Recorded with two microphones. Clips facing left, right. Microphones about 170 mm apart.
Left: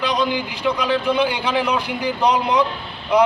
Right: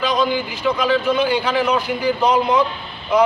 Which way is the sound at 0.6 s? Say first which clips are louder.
Right 2 dB; 15° left (ahead or behind).